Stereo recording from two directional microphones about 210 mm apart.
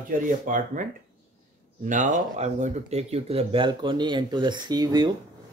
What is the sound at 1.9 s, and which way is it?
Speech, 35° right (ahead or behind).